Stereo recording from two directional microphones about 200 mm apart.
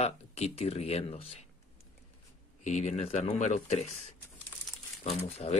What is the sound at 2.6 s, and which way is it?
Speech, 35° left (ahead or behind).